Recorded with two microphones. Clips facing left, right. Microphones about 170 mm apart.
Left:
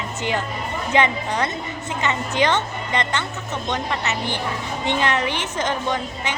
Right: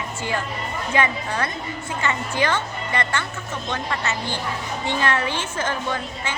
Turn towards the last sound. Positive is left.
turn(degrees=15)  # may be behind; listen again after turning